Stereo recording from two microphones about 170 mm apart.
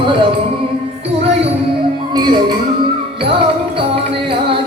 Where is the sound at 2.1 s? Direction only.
25° right (ahead or behind).